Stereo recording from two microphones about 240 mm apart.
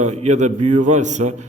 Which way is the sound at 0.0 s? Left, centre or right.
Right.